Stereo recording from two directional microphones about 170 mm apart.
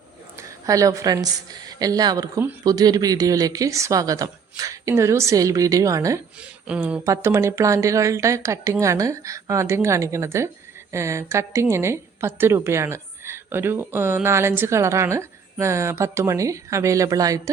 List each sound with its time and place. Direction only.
0.3 s a woman's voice: 20° right (ahead or behind)
6.7 s a woman's voice: 10° right (ahead or behind)